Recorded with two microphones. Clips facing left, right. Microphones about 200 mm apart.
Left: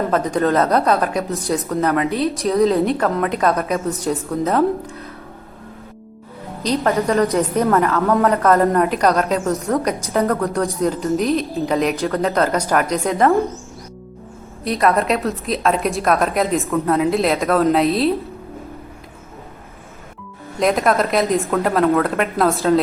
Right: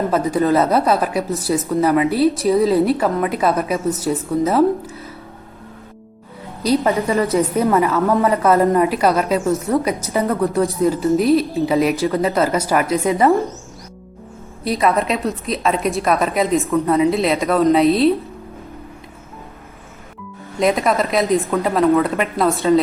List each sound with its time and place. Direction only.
0.3 s a woman's voice: 5° right (ahead or behind)
6.6 s a woman's voice: 10° right (ahead or behind)
14.6 s a woman's voice: centre (ahead or behind)
20.6 s a woman's voice: centre (ahead or behind)